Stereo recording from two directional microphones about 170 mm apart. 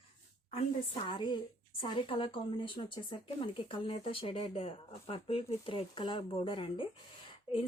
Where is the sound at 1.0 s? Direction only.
30° left (ahead or behind).